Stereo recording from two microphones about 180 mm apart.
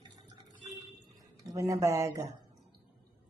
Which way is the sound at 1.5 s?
20° right (ahead or behind).